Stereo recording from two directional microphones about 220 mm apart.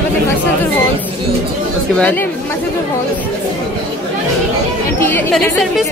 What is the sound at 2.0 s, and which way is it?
Speech, 5° left (ahead or behind).